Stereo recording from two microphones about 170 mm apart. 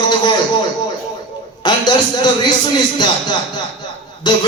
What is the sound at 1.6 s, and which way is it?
Speech, 25° left (ahead or behind).